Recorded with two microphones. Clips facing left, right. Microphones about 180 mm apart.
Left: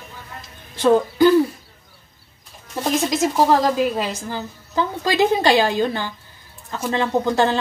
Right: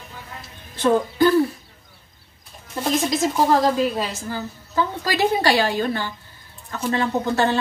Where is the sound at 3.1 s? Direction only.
15° left (ahead or behind).